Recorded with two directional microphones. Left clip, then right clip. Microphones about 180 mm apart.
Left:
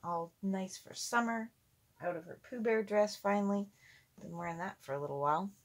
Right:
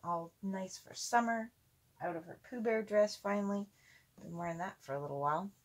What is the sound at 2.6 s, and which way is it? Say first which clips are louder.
Speech: even; 40° left (ahead or behind).